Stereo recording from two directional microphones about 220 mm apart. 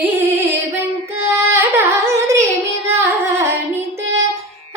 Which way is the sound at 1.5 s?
10° right (ahead or behind).